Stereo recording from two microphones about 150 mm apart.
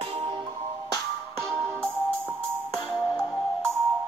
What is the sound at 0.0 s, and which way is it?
Music, 35° right (ahead or behind).